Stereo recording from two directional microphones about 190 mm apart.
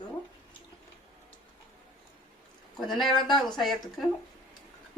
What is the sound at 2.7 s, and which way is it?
Speech, centre (ahead or behind).